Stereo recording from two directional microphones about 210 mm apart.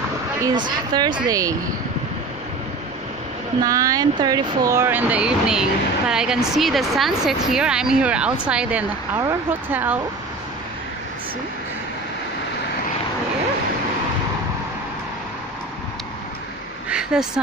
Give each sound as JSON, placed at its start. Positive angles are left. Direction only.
{"t": 0.7, "sound": "speech", "side_deg": -20}
{"t": 3.6, "sound": "speech", "side_deg": -15}
{"t": 16.9, "sound": "a sound", "side_deg": -5}